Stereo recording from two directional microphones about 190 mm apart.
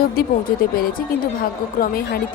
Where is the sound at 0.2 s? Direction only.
50° left (ahead or behind).